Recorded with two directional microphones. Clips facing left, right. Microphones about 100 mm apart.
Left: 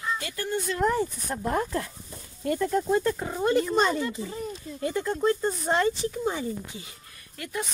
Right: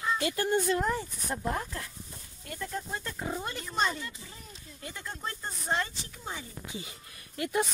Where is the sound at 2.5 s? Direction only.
90° left.